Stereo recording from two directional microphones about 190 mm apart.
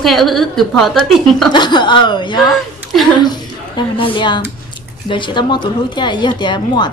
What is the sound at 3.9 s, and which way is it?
A woman's voice, 25° left (ahead or behind).